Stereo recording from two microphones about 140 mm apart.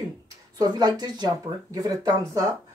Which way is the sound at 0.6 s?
30° right (ahead or behind).